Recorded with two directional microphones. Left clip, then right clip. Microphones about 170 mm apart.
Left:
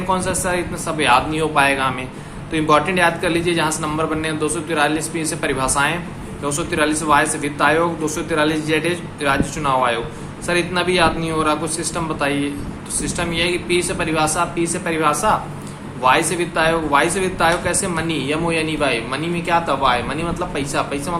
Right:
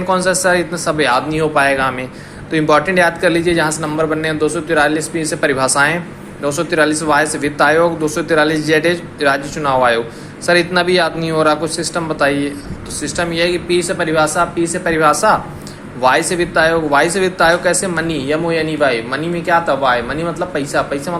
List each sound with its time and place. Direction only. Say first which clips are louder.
0.1 s a man's voice: right 7 dB; 35° right (ahead or behind)